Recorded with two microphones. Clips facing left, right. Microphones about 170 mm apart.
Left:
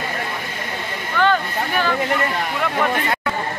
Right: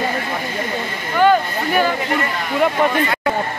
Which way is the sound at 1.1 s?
15° right (ahead or behind).